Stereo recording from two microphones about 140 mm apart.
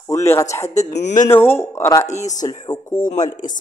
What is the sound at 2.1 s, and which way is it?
Speech, 55° left (ahead or behind).